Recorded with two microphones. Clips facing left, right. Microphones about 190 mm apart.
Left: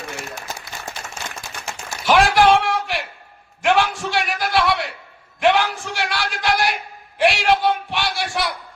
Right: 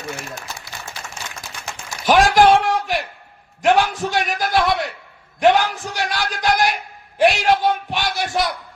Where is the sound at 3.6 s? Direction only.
40° right (ahead or behind).